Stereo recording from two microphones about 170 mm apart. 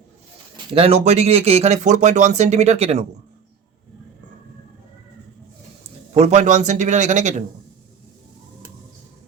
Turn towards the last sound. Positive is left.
turn(degrees=-45)  # may be behind; listen again after turning